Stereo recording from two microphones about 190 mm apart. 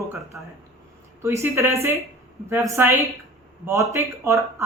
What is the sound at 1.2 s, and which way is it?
Speech, 15° right (ahead or behind).